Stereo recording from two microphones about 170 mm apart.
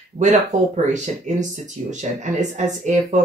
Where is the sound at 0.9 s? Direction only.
45° right (ahead or behind).